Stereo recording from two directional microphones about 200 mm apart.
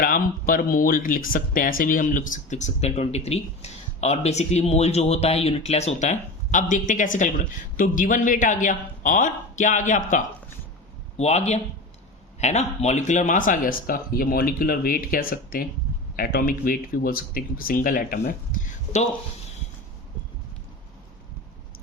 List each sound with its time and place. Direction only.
0.0 s speech: 45° left (ahead or behind)